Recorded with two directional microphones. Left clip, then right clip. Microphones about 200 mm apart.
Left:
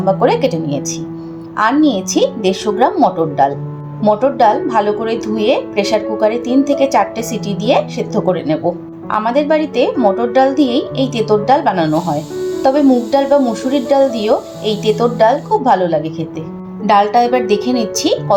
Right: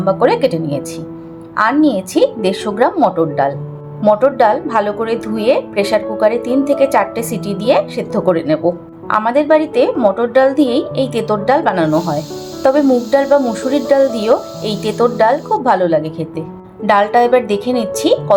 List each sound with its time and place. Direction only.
0.0 s speech: 20° right (ahead or behind)